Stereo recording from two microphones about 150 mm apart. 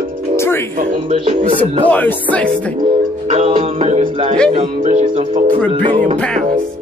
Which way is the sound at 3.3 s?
45° right (ahead or behind).